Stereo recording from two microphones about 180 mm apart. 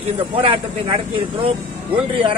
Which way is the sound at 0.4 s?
30° right (ahead or behind).